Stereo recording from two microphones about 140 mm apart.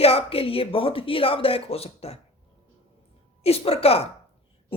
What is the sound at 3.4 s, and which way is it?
Speech, 45° left (ahead or behind).